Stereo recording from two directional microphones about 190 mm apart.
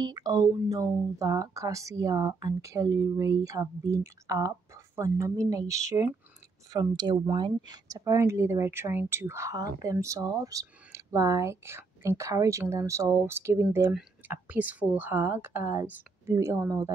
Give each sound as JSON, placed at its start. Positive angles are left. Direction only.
{"t": 0.0, "sound": "speech", "side_deg": -20}